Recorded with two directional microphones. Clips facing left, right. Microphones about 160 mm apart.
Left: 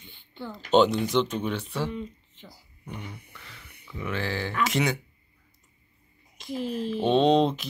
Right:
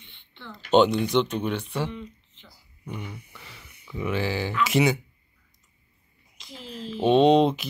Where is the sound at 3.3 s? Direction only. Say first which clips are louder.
Right 1 dB; 10° right (ahead or behind).